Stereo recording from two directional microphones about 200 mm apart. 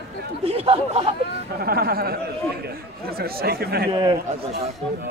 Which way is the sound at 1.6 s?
50° right (ahead or behind).